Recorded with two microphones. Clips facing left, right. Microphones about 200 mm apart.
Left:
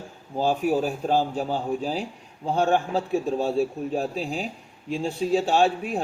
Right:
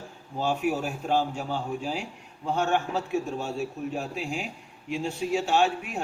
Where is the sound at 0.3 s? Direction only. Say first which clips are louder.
Left 4 dB; 35° left (ahead or behind).